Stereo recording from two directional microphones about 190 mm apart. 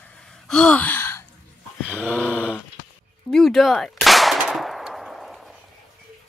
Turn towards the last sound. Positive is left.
turn(degrees=0)  # may be behind; listen again after turning